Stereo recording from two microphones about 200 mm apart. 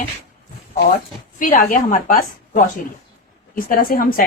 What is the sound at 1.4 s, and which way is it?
A woman's voice, 40° left (ahead or behind).